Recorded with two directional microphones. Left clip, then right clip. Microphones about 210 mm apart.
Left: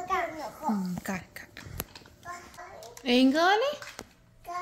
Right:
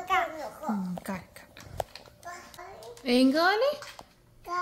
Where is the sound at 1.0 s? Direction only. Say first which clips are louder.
Left 2 dB; centre (ahead or behind).